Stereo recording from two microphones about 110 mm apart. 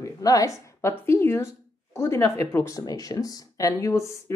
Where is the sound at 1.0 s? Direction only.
25° left (ahead or behind).